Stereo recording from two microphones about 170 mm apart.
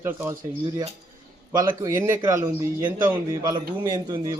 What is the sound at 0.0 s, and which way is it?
Speech, 15° right (ahead or behind).